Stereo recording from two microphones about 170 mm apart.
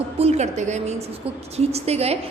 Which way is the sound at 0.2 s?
40° right (ahead or behind).